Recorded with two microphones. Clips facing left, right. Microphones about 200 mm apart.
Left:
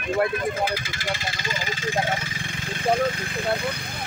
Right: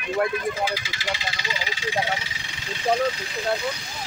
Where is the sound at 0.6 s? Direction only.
50° left (ahead or behind).